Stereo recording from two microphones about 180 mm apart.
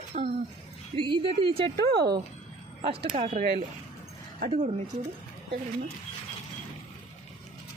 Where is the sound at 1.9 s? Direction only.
60° right (ahead or behind).